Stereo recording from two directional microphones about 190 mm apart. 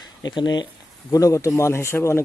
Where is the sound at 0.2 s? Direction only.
20° left (ahead or behind).